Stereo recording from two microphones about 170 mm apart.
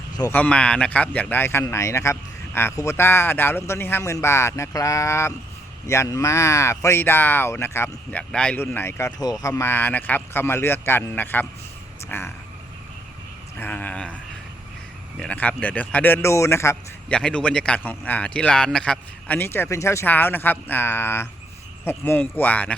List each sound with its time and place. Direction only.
0.2 s a man's voice: 10° left (ahead or behind)
13.6 s a man's voice: 10° left (ahead or behind)
15.2 s a man's voice: 10° left (ahead or behind)